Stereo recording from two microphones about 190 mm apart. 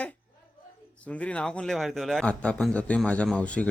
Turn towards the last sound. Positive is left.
turn(degrees=5)  # may be behind; listen again after turning